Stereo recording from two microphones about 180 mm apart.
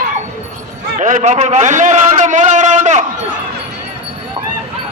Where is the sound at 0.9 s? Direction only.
40° right (ahead or behind).